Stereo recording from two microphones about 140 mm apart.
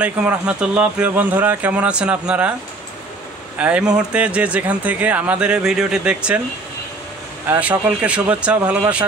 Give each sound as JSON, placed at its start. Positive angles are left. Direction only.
{"t": 0.0, "sound": "speech", "side_deg": -10}
{"t": 3.5, "sound": "speech", "side_deg": -10}
{"t": 7.4, "sound": "speech", "side_deg": -10}